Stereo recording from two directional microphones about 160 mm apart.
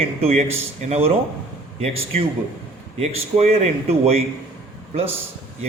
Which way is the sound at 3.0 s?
45° right (ahead or behind).